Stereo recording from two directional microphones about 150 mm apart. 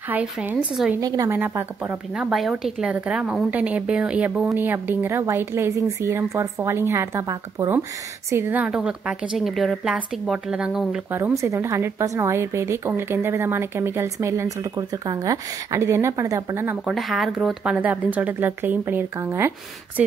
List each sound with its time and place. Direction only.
0.1 s a woman's voice: 10° right (ahead or behind)
1.0 s a woman's voice: 20° right (ahead or behind); by 11.1 s 5° right (ahead or behind)
11.1 s a woman's voice: 15° right (ahead or behind)
16.8 s a woman's voice: centre (ahead or behind); by 19.5 s 15° right (ahead or behind)